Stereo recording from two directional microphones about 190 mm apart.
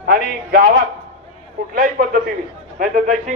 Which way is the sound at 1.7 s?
50° right (ahead or behind).